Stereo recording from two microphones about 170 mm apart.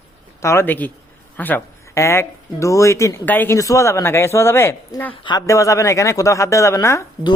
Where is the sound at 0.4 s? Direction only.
15° left (ahead or behind).